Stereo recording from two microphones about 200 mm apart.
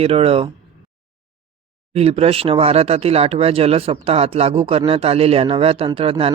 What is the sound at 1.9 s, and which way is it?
Speech, 30° right (ahead or behind).